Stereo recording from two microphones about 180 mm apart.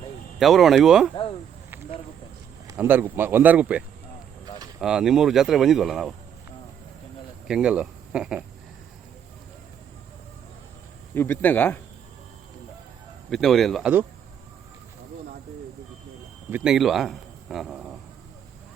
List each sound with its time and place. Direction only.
0.3 s speech: centre (ahead or behind)
2.6 s speech: 10° right (ahead or behind)
7.4 s speech: 5° right (ahead or behind)
11.1 s speech: 10° left (ahead or behind)
13.3 s speech: centre (ahead or behind)
16.5 s speech: 5° right (ahead or behind)